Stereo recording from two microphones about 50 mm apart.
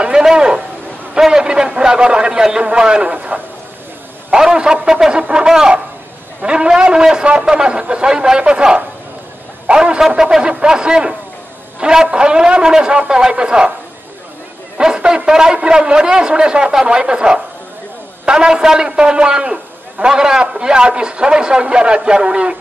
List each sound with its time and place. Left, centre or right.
0.0 s a sound: centre
1.1 s a man's voice: centre
14.8 s a man's voice: centre